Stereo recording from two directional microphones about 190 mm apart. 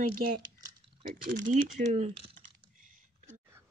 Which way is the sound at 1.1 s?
45° right (ahead or behind).